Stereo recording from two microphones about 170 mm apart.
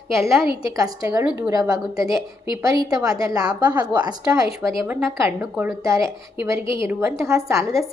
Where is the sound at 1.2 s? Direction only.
5° right (ahead or behind).